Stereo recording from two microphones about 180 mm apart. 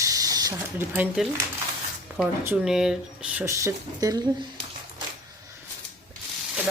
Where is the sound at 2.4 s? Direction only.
5° right (ahead or behind).